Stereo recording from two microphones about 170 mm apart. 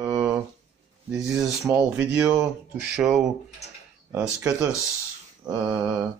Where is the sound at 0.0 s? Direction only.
10° right (ahead or behind).